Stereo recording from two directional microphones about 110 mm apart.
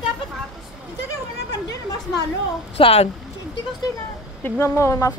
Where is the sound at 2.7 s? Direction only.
55° left (ahead or behind).